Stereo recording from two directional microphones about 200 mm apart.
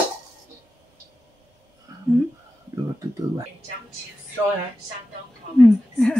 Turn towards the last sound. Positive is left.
turn(degrees=5)  # may be behind; listen again after turning